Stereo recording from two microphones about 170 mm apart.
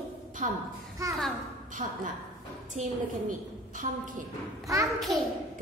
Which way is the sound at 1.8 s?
40° right (ahead or behind).